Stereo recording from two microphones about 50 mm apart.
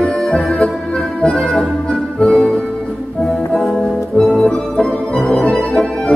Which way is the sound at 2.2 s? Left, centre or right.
Left.